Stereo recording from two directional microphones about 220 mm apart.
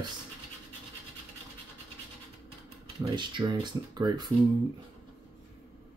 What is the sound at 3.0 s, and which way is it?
Speech, 20° right (ahead or behind).